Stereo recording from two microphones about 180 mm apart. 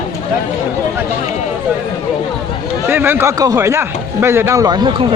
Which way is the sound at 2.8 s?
10° right (ahead or behind).